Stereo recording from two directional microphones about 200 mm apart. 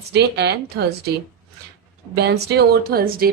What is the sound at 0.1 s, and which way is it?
A woman's voice, 55° right (ahead or behind).